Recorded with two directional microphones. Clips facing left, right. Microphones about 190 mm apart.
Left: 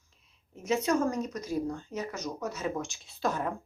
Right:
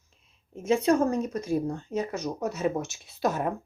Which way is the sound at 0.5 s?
30° right (ahead or behind).